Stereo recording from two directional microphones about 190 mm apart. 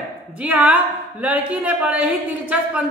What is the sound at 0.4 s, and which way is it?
A woman's voice, 5° right (ahead or behind).